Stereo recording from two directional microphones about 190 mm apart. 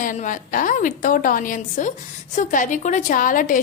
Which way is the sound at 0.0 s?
45° left (ahead or behind).